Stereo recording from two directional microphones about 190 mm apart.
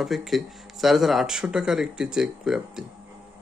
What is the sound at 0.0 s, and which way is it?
Speech, centre (ahead or behind).